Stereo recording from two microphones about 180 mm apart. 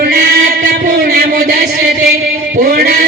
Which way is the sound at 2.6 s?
60° right (ahead or behind).